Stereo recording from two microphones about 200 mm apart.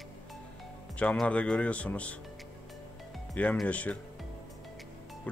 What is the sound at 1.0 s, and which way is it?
Speech, 5° left (ahead or behind).